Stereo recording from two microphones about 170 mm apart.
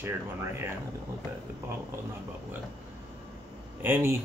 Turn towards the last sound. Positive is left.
turn(degrees=-15)  # may be behind; listen again after turning